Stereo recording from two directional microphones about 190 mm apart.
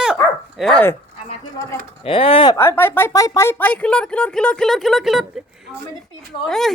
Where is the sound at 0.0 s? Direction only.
Centre (ahead or behind).